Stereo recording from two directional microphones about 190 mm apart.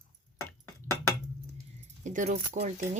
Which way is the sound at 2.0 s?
40° right (ahead or behind).